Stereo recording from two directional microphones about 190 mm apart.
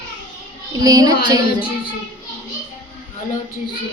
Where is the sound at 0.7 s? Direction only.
20° right (ahead or behind).